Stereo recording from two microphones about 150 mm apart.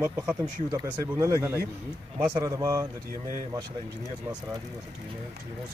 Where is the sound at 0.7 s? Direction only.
20° right (ahead or behind).